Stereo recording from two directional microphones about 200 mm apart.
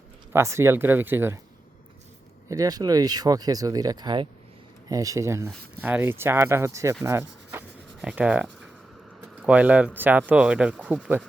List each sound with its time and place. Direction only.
0.3 s speech: 15° right (ahead or behind)
2.5 s speech: 20° right (ahead or behind)
7.0 s rub: 15° right (ahead or behind)
8.0 s writing: 5° right (ahead or behind)
9.4 s speech: 5° right (ahead or behind)